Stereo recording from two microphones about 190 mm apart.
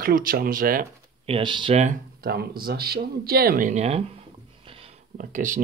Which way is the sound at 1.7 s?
40° right (ahead or behind).